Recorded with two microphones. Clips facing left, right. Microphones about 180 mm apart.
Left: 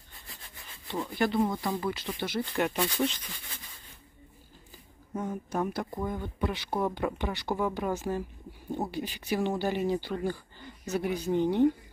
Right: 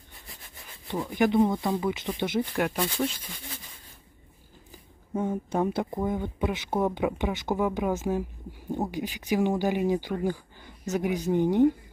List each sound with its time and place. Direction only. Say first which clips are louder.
0.8 s speech: right 4 dB; 15° right (ahead or behind)
2.5 s speech: right 1 dB; centre (ahead or behind)
5.1 s speech: right 5 dB; 30° right (ahead or behind)